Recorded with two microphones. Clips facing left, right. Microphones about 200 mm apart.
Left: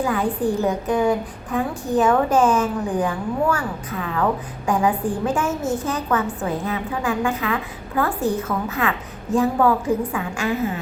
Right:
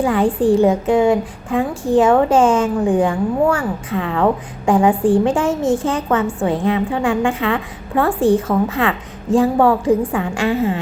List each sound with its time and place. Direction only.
0.0 s a woman's voice: 30° right (ahead or behind)